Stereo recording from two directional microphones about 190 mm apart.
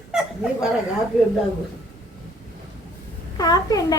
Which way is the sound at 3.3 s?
20° left (ahead or behind).